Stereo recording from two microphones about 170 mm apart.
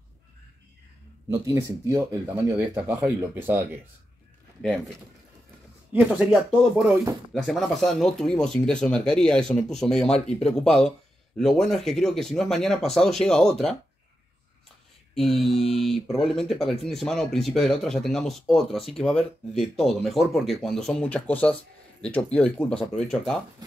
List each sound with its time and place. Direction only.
1.3 s speech: 20° right (ahead or behind)
4.6 s speech: centre (ahead or behind)
5.9 s speech: 5° right (ahead or behind)
15.4 s speech: centre (ahead or behind)